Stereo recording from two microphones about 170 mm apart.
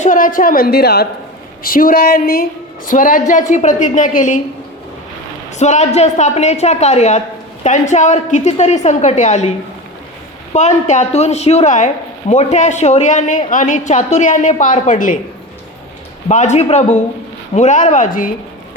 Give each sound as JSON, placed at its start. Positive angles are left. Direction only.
{"t": 0.0, "sound": "a woman's voice", "side_deg": 50}
{"t": 1.6, "sound": "a woman's voice", "side_deg": 55}
{"t": 5.5, "sound": "a woman's voice", "side_deg": 45}
{"t": 10.5, "sound": "a woman's voice", "side_deg": 45}
{"t": 16.3, "sound": "a woman's voice", "side_deg": 45}